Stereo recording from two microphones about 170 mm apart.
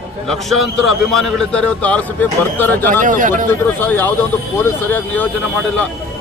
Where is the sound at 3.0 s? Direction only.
50° right (ahead or behind).